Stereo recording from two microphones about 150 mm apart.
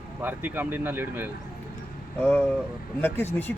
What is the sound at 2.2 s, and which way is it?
Speech, 15° left (ahead or behind).